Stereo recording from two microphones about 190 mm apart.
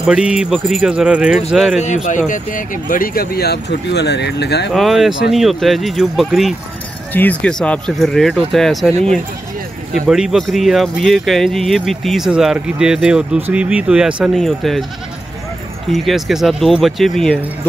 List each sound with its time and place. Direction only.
0.0 s speech: 5° right (ahead or behind)
2.0 s speech: 40° left (ahead or behind); by 4.6 s 60° left (ahead or behind)
4.7 s speech: centre (ahead or behind)
10.0 s speech: 5° right (ahead or behind)
15.9 s speech: centre (ahead or behind)